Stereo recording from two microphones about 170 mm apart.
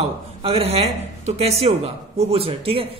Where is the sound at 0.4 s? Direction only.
35° right (ahead or behind).